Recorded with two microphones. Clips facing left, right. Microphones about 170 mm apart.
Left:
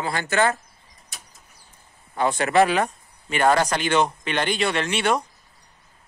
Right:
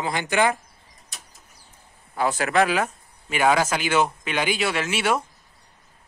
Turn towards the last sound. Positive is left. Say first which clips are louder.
# left 1 dB
turn(degrees=-5)  # may be behind; listen again after turning